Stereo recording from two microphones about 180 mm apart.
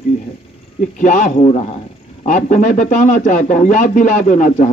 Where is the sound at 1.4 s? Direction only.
30° left (ahead or behind).